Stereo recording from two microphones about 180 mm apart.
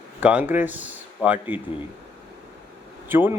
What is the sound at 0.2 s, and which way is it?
Speech, 10° right (ahead or behind).